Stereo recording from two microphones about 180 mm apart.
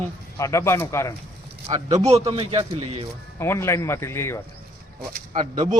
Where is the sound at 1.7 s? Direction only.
35° right (ahead or behind).